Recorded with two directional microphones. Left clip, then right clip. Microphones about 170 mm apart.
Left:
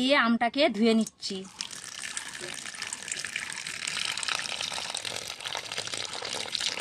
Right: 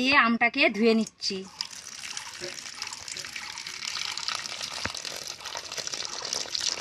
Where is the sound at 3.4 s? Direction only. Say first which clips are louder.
Left 1 dB; 30° left (ahead or behind).